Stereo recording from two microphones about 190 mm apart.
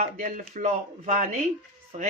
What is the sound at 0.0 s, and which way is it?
Speech, 40° right (ahead or behind).